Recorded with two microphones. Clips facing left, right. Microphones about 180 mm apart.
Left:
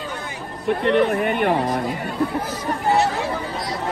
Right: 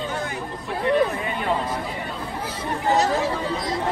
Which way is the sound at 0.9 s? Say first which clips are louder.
Left 2 dB; 70° left (ahead or behind).